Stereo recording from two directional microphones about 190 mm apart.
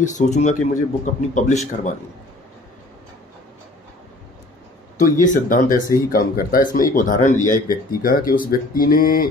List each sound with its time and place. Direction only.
0.0 s a man's voice: 40° left (ahead or behind)
4.9 s speech: 45° left (ahead or behind)